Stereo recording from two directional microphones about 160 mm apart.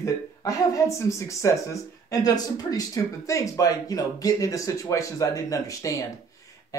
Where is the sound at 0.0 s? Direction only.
20° left (ahead or behind).